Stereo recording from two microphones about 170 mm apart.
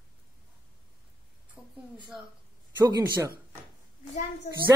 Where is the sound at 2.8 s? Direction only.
15° right (ahead or behind).